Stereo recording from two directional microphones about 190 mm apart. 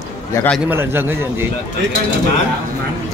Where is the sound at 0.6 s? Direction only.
10° right (ahead or behind).